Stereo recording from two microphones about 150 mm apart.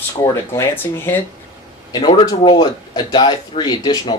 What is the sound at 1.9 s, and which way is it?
Speech, 30° left (ahead or behind).